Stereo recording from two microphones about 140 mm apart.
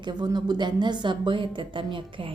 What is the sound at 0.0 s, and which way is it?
Speech, 30° right (ahead or behind).